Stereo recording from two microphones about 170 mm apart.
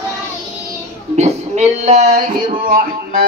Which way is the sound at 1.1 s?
40° right (ahead or behind).